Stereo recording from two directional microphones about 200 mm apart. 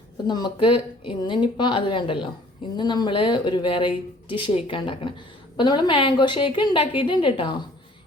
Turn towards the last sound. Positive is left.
turn(degrees=25)  # may be behind; listen again after turning